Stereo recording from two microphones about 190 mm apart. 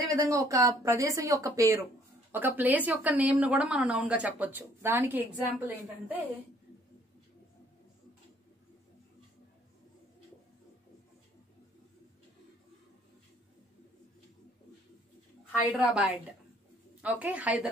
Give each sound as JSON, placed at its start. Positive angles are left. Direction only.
{"t": 0.1, "sound": "a woman's voice", "side_deg": -15}
{"t": 15.7, "sound": "a woman's voice", "side_deg": -5}